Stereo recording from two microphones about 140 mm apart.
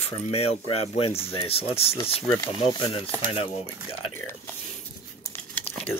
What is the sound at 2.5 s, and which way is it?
Speech, 30° left (ahead or behind).